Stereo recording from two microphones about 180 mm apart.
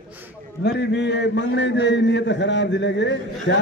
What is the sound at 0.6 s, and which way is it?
A man's voice, 70° left (ahead or behind).